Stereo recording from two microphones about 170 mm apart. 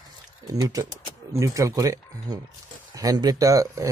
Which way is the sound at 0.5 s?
20° right (ahead or behind).